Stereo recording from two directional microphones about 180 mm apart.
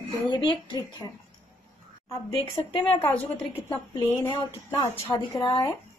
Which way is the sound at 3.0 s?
5° left (ahead or behind).